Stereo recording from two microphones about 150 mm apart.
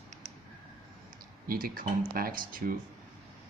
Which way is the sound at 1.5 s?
75° right (ahead or behind).